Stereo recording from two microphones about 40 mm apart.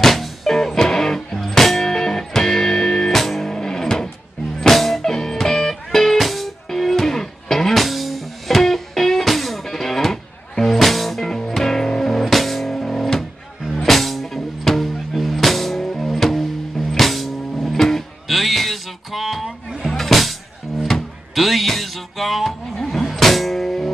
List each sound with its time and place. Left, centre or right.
0.0 s music: centre
3.1 s music: centre
5.1 s music: centre
13.8 s music: centre